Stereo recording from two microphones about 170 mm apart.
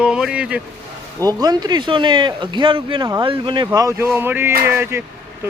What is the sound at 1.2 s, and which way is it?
Speech, 25° right (ahead or behind).